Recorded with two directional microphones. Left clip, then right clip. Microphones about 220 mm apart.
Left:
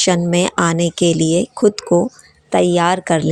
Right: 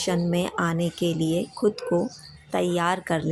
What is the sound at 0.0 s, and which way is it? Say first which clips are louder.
A woman's voice: left 10 dB; 40° left (ahead or behind).